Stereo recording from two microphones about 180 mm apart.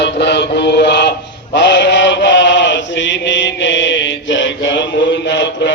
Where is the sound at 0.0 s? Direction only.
70° left (ahead or behind).